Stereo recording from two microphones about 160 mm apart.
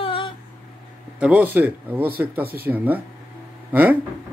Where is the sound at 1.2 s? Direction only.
10° right (ahead or behind).